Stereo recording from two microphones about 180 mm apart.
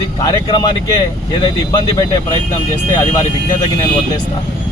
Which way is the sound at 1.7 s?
20° left (ahead or behind).